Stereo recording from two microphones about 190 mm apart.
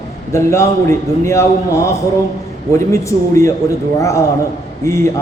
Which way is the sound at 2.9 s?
15° left (ahead or behind).